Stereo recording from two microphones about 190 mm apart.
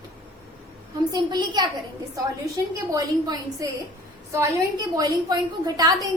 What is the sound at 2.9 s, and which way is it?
Speech, 15° right (ahead or behind).